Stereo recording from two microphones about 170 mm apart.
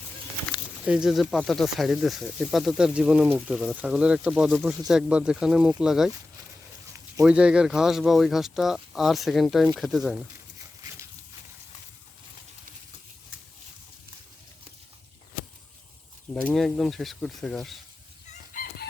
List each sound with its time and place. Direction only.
0.9 s speech: 5° right (ahead or behind)
16.3 s speech: 5° left (ahead or behind)
18.5 s chicken: 60° left (ahead or behind)